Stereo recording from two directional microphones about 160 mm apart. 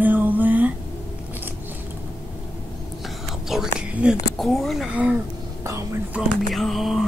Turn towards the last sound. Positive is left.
turn(degrees=0)  # may be behind; listen again after turning